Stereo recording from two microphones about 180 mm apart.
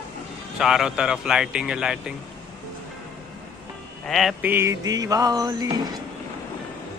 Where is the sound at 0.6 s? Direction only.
5° right (ahead or behind).